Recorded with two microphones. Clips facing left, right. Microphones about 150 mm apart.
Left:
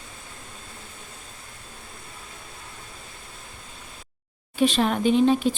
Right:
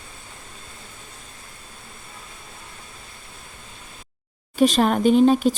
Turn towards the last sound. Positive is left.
turn(degrees=-40)  # may be behind; listen again after turning